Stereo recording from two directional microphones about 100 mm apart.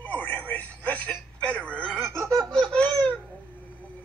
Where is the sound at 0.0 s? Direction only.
20° left (ahead or behind).